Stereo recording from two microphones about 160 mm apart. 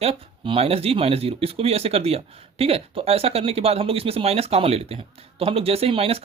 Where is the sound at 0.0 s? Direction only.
35° right (ahead or behind).